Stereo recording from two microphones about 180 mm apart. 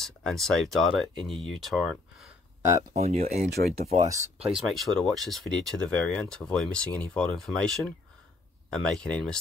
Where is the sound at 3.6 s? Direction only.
65° right (ahead or behind).